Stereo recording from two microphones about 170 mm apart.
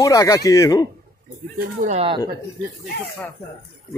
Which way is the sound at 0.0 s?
20° left (ahead or behind).